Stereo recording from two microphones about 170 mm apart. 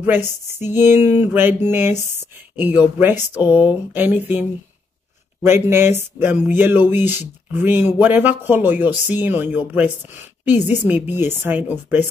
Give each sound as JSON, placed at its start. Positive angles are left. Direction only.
{"t": 0.0, "sound": "speech", "side_deg": -10}